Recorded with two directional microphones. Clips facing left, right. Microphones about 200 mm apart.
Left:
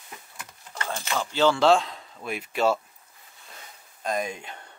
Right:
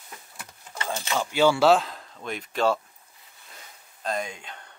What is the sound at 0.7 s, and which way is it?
Speech, 15° right (ahead or behind).